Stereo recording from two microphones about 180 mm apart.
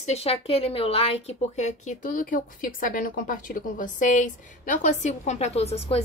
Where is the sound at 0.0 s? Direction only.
35° left (ahead or behind).